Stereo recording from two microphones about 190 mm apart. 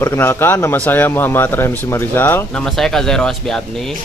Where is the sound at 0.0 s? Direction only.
10° left (ahead or behind).